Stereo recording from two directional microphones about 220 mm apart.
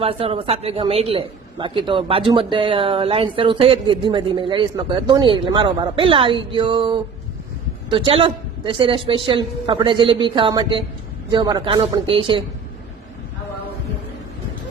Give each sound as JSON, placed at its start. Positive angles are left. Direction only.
{"t": 0.0, "sound": "a man's voice", "side_deg": -25}